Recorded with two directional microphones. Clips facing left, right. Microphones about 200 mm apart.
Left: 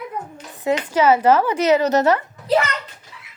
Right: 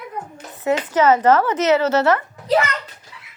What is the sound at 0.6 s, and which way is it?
A woman's voice, 10° left (ahead or behind).